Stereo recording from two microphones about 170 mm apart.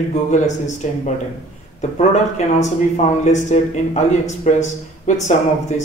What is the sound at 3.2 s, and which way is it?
Speech, 45° left (ahead or behind).